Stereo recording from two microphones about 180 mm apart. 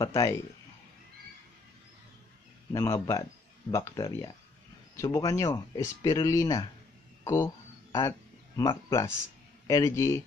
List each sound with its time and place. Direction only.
0.0 s speech: 20° left (ahead or behind)
2.7 s speech: 20° left (ahead or behind)
7.2 s a sound: 15° left (ahead or behind)
8.5 s speech: 20° left (ahead or behind)